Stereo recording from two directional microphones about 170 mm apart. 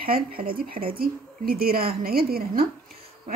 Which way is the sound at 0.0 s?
60° right (ahead or behind).